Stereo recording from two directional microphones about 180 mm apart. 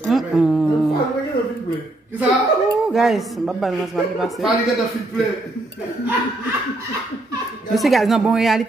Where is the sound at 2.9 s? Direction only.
Centre (ahead or behind).